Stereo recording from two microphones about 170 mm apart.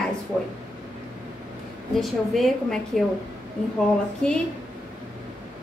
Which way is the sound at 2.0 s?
Centre (ahead or behind).